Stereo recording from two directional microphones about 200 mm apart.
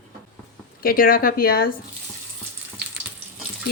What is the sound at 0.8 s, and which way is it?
Speech, 45° left (ahead or behind).